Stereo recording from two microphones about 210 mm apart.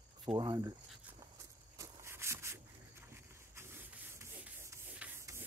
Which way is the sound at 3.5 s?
10° right (ahead or behind).